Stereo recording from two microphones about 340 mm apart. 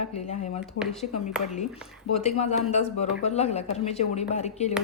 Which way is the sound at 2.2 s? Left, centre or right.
Centre.